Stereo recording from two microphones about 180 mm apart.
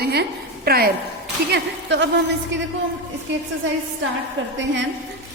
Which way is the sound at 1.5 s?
75° right (ahead or behind).